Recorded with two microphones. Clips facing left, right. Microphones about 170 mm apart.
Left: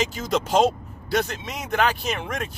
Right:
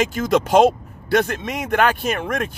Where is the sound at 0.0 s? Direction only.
55° right (ahead or behind).